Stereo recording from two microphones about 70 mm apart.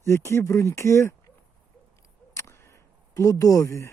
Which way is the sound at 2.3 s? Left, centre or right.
Left.